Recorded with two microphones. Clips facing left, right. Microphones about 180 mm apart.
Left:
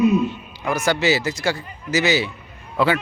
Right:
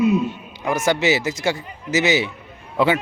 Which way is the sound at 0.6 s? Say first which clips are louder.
Right 1 dB; 20° right (ahead or behind).